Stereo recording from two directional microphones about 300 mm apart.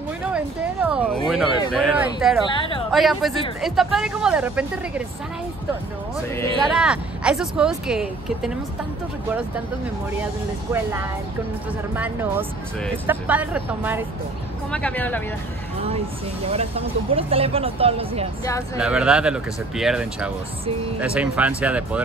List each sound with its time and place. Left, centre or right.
0.8 s speech: centre
2.5 s speech: centre
2.9 s speech: centre
6.3 s speech: centre
6.7 s speech: centre
11.9 s speech: centre
14.7 s speech: centre
16.4 s speech: centre
18.8 s speech: centre